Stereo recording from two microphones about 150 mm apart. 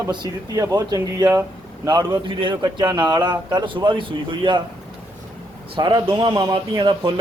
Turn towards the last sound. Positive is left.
turn(degrees=-35)  # may be behind; listen again after turning